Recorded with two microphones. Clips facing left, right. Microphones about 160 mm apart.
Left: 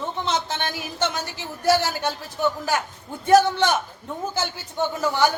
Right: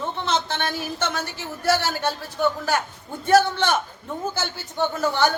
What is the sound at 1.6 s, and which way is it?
Speech, 15° left (ahead or behind).